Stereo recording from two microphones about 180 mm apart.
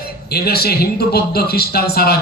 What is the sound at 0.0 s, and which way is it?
A man's voice, 60° left (ahead or behind).